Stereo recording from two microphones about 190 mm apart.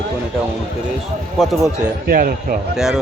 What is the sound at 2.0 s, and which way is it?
Speech, 45° right (ahead or behind).